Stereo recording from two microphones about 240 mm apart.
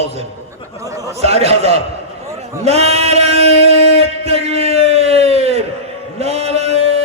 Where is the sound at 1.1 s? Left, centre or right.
Right.